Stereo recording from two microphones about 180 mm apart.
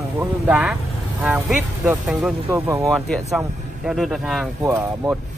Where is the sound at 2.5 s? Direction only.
15° right (ahead or behind).